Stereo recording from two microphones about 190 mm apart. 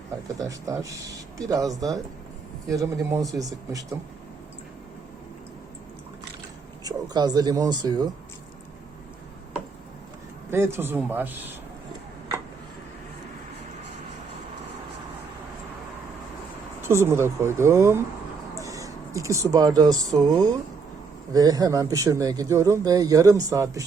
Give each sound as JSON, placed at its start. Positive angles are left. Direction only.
{"t": 0.3, "sound": "speech", "side_deg": -15}
{"t": 6.8, "sound": "speech", "side_deg": -20}
{"t": 10.5, "sound": "speech", "side_deg": -10}
{"t": 16.8, "sound": "speech", "side_deg": -15}